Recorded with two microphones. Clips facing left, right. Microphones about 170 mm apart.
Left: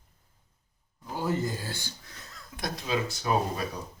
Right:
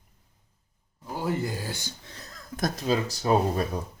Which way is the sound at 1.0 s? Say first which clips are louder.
Right 1 dB; 15° right (ahead or behind).